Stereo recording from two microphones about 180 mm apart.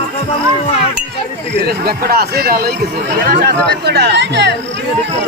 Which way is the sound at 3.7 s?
65° right (ahead or behind).